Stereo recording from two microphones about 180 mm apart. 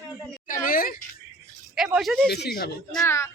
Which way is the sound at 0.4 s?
50° left (ahead or behind).